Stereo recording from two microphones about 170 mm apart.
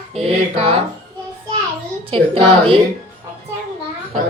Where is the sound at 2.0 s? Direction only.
35° right (ahead or behind).